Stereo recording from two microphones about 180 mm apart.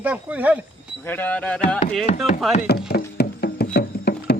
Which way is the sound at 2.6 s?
60° left (ahead or behind).